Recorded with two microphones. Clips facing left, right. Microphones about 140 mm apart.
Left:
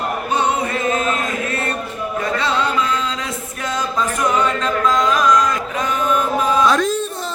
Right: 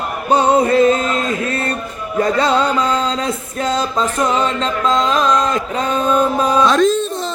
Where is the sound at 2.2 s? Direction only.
35° right (ahead or behind).